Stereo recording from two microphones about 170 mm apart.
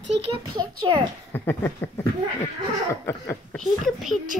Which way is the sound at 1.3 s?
15° left (ahead or behind).